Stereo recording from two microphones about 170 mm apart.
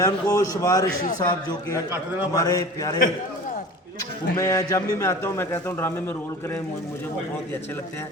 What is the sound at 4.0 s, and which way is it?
A man's voice, 20° left (ahead or behind).